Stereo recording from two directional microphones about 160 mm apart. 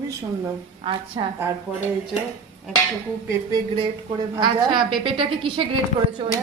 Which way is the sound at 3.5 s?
30° right (ahead or behind).